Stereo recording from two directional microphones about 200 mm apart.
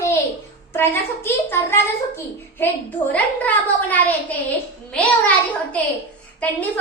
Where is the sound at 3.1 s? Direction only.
10° left (ahead or behind).